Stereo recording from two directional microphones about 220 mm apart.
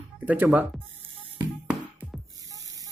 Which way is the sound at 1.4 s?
5° right (ahead or behind).